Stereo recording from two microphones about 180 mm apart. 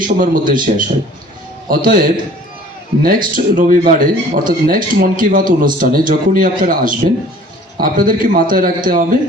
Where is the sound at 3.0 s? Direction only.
50° right (ahead or behind).